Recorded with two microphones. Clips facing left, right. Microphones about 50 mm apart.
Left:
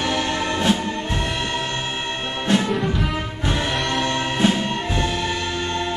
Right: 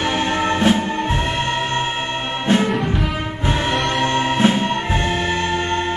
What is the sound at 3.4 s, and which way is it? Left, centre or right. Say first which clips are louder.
Music: right 4 dB; right.